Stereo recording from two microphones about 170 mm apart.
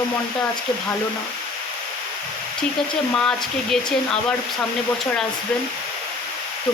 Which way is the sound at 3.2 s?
5° left (ahead or behind).